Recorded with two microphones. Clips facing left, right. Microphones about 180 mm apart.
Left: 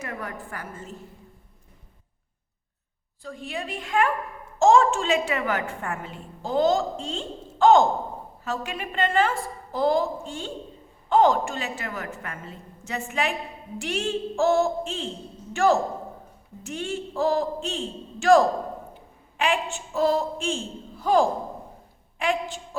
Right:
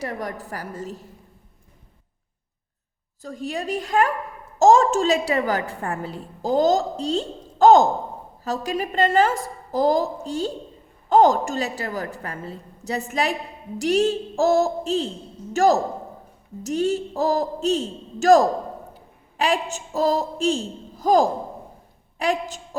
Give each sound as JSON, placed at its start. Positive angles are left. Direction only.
{"t": 0.0, "sound": "a woman's voice", "side_deg": -35}
{"t": 3.2, "sound": "a woman's voice", "side_deg": -40}